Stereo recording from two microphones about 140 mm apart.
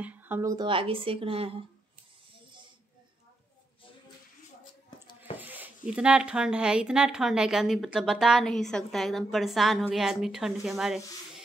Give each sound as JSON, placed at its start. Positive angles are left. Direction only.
{"t": 0.0, "sound": "speech", "side_deg": -10}
{"t": 0.7, "sound": "speech", "side_deg": -40}
{"t": 5.4, "sound": "speech", "side_deg": -10}